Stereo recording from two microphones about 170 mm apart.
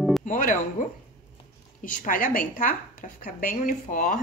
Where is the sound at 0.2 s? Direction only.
50° left (ahead or behind).